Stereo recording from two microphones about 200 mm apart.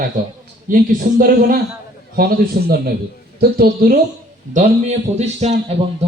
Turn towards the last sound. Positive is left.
turn(degrees=-30)  # may be behind; listen again after turning